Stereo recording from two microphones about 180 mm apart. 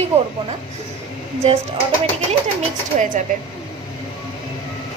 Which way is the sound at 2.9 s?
40° right (ahead or behind).